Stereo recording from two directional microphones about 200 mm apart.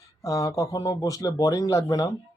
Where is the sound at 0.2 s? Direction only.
15° left (ahead or behind).